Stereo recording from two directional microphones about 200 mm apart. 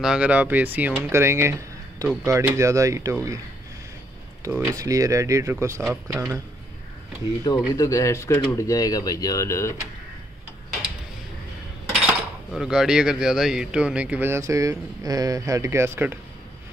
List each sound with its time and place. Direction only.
0.0 s speech: 5° right (ahead or behind)
4.5 s speech: 10° right (ahead or behind)
7.4 s speech: 20° left (ahead or behind)
12.1 s speech: 5° right (ahead or behind)